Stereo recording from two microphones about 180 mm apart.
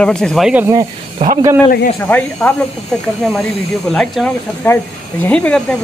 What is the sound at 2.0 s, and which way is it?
Speech, 10° left (ahead or behind).